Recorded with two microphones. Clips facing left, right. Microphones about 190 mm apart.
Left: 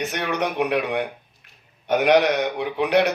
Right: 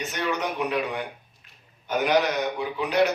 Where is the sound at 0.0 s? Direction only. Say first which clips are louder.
Left 3 dB; 65° left (ahead or behind).